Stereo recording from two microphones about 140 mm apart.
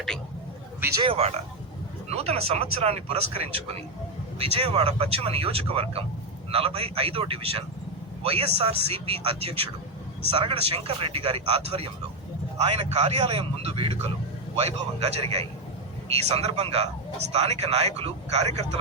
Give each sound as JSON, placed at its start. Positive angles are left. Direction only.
{"t": 1.0, "sound": "a man's voice", "side_deg": -45}